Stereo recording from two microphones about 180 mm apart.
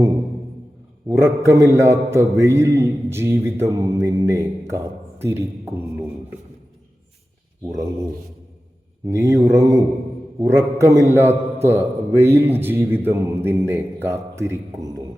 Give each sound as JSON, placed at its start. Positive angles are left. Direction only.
{"t": 1.0, "sound": "mantra", "side_deg": -15}
{"t": 9.0, "sound": "mantra", "side_deg": -15}